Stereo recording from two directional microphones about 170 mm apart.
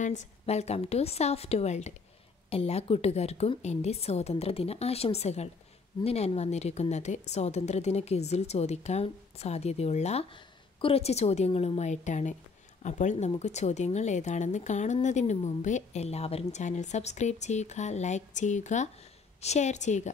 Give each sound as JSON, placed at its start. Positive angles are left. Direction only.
{"t": 0.0, "sound": "a woman's voice", "side_deg": 45}